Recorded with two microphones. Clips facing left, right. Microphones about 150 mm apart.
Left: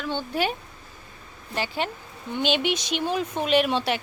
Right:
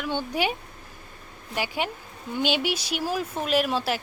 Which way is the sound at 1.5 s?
10° right (ahead or behind).